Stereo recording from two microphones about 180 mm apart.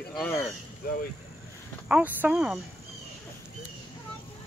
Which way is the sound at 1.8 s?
5° right (ahead or behind).